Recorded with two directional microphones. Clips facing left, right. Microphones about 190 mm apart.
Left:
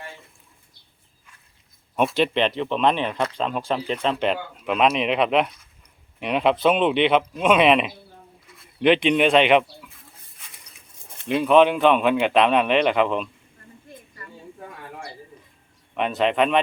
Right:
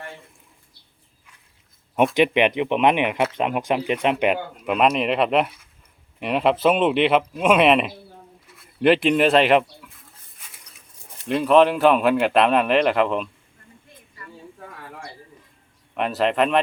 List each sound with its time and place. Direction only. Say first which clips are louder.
2.1 s speech: right 4 dB; 15° right (ahead or behind)
8.5 s a sound: right 1 dB; 5° right (ahead or behind)
11.3 s speech: even; centre (ahead or behind)
16.0 s speech: even; centre (ahead or behind)